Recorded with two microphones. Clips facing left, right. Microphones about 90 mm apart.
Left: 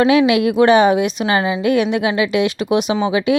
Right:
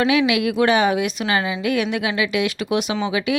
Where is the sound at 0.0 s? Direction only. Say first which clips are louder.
Left 5 dB; 35° left (ahead or behind).